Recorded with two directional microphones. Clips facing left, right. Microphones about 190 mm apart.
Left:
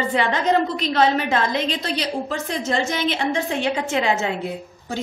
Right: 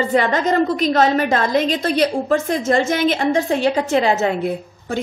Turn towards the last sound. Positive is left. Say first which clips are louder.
# right 5 dB
turn(degrees=-35)  # may be behind; listen again after turning